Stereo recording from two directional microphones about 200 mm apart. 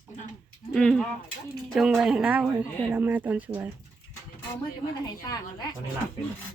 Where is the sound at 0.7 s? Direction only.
5° left (ahead or behind).